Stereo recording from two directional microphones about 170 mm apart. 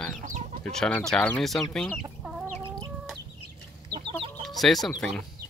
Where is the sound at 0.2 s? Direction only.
50° right (ahead or behind).